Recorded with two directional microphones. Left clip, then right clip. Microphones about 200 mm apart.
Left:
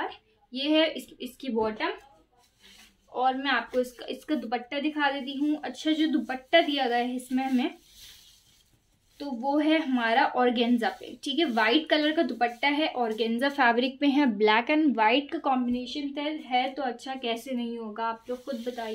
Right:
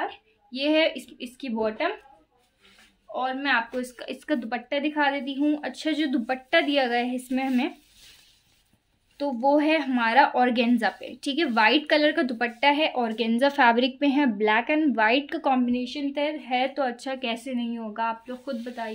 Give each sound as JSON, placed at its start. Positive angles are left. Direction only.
{"t": 0.1, "sound": "a woman's voice", "side_deg": -50}
{"t": 3.2, "sound": "a woman's voice", "side_deg": -50}
{"t": 9.2, "sound": "a woman's voice", "side_deg": -60}